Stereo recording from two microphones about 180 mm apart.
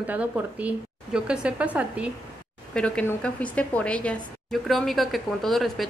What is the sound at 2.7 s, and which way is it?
A woman's voice, 5° left (ahead or behind).